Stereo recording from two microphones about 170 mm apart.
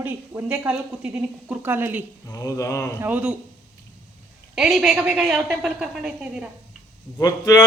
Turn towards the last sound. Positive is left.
turn(degrees=20)  # may be behind; listen again after turning